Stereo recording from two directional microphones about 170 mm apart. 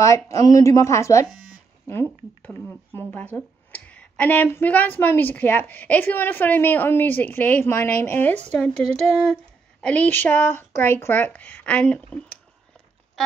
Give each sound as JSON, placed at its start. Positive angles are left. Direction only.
{"t": 0.0, "sound": "speech", "side_deg": 20}
{"t": 2.4, "sound": "speech", "side_deg": 10}